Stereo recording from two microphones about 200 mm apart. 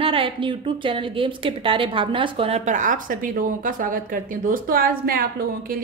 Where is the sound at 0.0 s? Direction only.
25° right (ahead or behind).